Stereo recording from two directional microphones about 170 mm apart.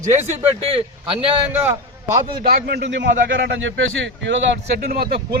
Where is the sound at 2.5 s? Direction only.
75° right (ahead or behind); by 3.7 s 90° right.